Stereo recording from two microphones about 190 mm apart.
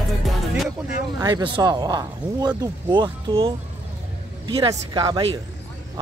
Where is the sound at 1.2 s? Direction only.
20° right (ahead or behind).